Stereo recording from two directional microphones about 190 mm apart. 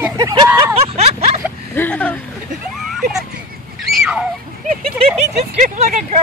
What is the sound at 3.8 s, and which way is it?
Fowl, centre (ahead or behind).